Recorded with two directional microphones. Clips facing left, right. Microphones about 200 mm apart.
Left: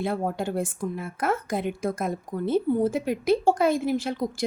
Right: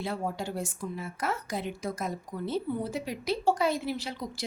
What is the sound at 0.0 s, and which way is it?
Speech, 50° left (ahead or behind).